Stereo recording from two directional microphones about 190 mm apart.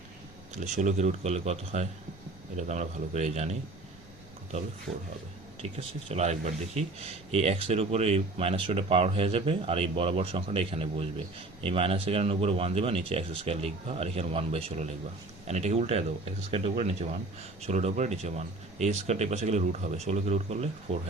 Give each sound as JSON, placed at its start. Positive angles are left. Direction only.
{"t": 0.5, "sound": "speech", "side_deg": -40}
{"t": 5.6, "sound": "speech", "side_deg": -35}